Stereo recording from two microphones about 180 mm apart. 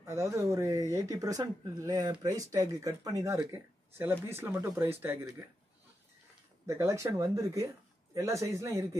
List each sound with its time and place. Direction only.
0.0 s speech: 15° right (ahead or behind)
6.7 s speech: 15° right (ahead or behind)